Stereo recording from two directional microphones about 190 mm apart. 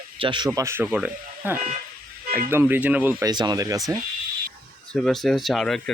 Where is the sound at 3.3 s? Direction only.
20° right (ahead or behind).